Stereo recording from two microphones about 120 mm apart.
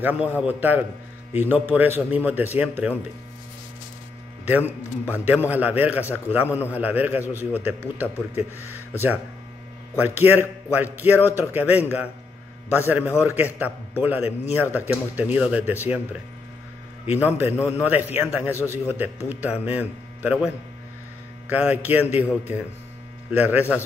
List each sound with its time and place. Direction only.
0.0 s a man's voice: 15° right (ahead or behind)
4.5 s a man's voice: 15° right (ahead or behind)
17.1 s a man's voice: 15° right (ahead or behind)
21.5 s a man's voice: 15° right (ahead or behind)
23.3 s a man's voice: 15° right (ahead or behind)